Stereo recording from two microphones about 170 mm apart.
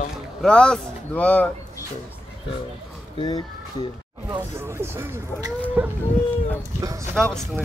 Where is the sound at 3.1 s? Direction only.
30° left (ahead or behind).